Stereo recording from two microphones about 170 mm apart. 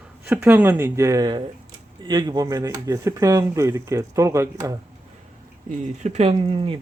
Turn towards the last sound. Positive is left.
turn(degrees=-30)  # may be behind; listen again after turning